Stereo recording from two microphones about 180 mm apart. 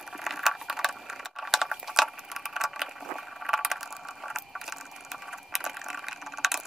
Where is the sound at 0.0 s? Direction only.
Centre (ahead or behind).